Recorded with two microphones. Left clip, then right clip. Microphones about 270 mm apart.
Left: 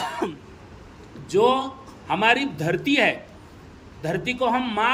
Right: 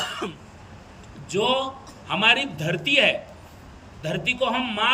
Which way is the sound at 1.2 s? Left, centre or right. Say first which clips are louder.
Left 3 dB; centre.